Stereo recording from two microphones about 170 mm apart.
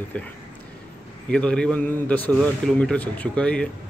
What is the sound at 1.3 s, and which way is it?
Speech, 5° left (ahead or behind).